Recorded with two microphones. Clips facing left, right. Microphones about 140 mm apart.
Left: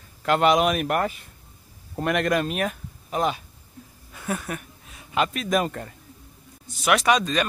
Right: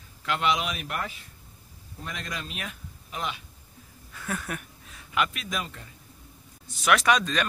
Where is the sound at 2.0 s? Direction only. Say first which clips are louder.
Left 15 dB; 70° left (ahead or behind); by 3.4 s 40° left (ahead or behind).